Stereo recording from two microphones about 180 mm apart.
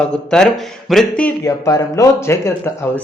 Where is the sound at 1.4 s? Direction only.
20° left (ahead or behind).